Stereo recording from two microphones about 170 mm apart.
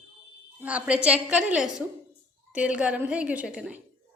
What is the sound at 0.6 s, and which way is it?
A woman's voice, 10° right (ahead or behind).